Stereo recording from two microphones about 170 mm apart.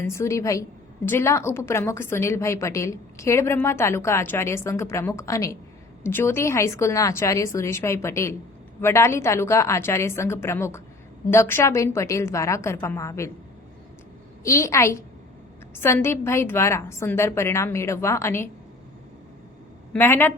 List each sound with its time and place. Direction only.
0.0 s a woman's voice: 15° left (ahead or behind)
14.4 s a woman's voice: 15° left (ahead or behind)
19.9 s a woman's voice: 15° left (ahead or behind)